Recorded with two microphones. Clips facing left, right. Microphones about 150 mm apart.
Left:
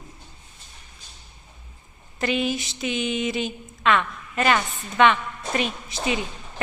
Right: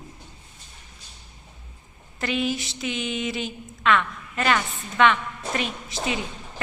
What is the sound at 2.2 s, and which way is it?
A woman's voice, 20° left (ahead or behind).